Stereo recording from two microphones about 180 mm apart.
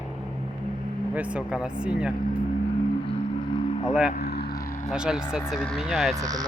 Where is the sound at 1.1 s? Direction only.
5° right (ahead or behind).